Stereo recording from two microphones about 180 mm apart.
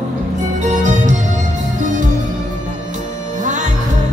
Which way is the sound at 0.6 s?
40° right (ahead or behind).